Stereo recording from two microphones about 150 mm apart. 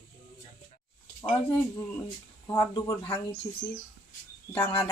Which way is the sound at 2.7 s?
35° left (ahead or behind).